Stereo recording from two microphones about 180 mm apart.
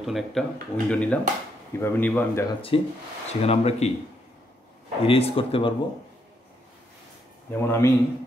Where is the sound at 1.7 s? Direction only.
10° left (ahead or behind).